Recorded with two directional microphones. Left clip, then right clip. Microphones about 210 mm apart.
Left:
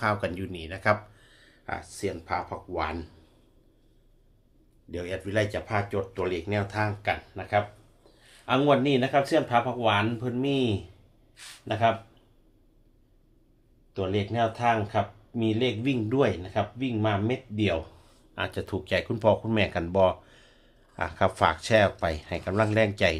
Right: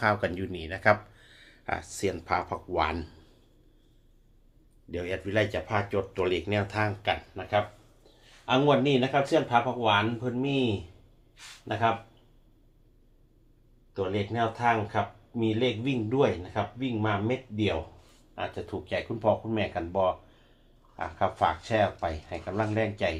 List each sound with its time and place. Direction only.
0.0 s speech: centre (ahead or behind)
4.9 s speech: centre (ahead or behind)
8.4 s speech: 20° left (ahead or behind)
13.9 s speech: 35° left (ahead or behind)